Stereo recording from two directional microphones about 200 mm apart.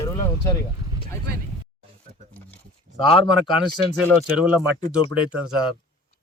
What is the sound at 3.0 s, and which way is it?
Speech, 25° left (ahead or behind).